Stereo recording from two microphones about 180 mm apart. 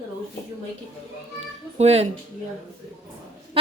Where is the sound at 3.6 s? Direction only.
30° right (ahead or behind).